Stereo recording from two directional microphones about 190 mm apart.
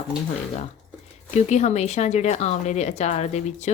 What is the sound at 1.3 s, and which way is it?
A woman's voice, 35° left (ahead or behind).